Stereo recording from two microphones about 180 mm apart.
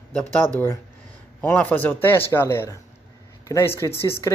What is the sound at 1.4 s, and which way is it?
Speech, 10° left (ahead or behind).